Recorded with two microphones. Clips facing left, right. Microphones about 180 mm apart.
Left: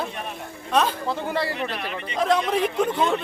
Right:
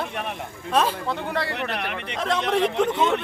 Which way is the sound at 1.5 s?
65° right (ahead or behind).